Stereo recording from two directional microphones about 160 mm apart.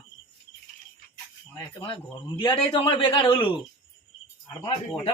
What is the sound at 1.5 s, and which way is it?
A man's voice, 30° left (ahead or behind).